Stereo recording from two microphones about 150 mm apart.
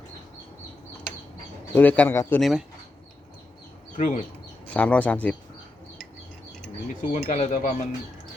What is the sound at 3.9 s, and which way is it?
Speech, 60° left (ahead or behind).